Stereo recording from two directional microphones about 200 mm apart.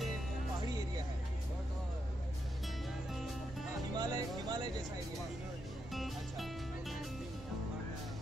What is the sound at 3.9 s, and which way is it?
Speech, 20° right (ahead or behind).